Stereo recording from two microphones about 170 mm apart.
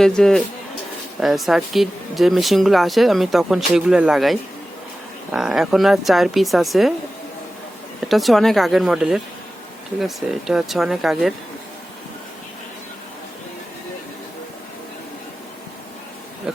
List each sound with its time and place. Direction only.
0.0 s speech: 5° left (ahead or behind)
8.0 s speech: centre (ahead or behind)